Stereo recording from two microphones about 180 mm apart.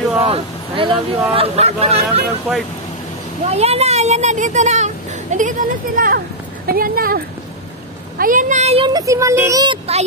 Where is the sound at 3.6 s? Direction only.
35° right (ahead or behind).